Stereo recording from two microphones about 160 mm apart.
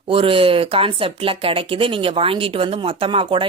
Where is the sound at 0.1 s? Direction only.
35° right (ahead or behind).